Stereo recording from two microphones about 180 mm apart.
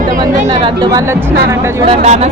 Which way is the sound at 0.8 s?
20° right (ahead or behind).